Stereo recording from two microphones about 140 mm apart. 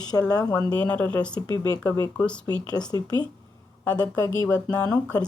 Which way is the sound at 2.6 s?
30° left (ahead or behind).